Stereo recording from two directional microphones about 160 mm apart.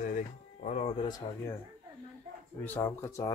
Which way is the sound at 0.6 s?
45° left (ahead or behind).